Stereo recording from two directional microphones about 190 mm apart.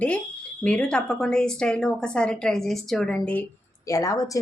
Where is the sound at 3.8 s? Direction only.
15° left (ahead or behind).